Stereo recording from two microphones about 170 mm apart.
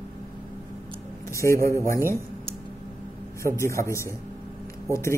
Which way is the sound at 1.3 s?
15° left (ahead or behind).